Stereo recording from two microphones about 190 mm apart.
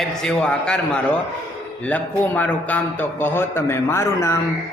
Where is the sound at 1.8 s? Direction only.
10° left (ahead or behind).